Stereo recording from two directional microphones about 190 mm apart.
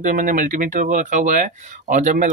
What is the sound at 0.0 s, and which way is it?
Speech, 45° right (ahead or behind).